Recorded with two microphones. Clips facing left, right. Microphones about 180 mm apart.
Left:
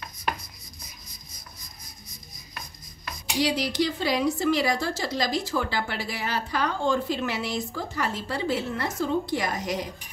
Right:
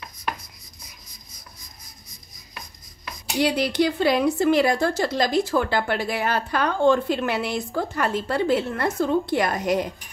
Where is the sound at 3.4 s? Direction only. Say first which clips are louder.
Right 4 dB; 60° right (ahead or behind).